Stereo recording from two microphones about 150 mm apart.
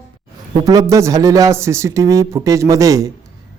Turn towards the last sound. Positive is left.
turn(degrees=-20)  # may be behind; listen again after turning